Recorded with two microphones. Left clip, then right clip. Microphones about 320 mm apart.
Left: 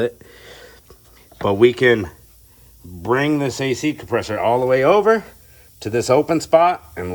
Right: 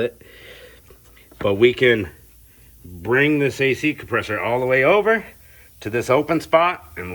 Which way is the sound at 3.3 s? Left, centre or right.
Centre.